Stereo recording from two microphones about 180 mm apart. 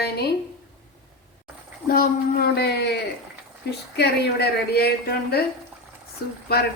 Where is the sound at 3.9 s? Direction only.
65° left (ahead or behind).